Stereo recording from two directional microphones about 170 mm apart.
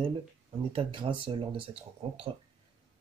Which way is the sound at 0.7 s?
30° right (ahead or behind).